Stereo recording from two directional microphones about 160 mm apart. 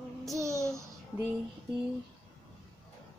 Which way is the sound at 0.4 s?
20° right (ahead or behind).